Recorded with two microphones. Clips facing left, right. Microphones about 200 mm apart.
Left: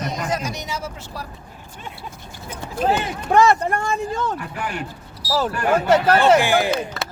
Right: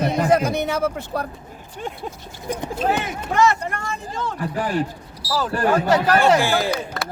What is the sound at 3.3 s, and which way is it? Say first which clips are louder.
Speech: left 4 dB; 60° left (ahead or behind).